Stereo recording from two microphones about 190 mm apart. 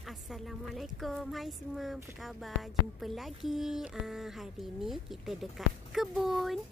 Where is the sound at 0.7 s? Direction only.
Centre (ahead or behind).